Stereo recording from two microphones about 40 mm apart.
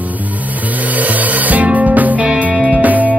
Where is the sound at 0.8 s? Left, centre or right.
Right.